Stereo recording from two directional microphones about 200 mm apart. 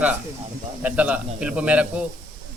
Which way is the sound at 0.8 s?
5° right (ahead or behind).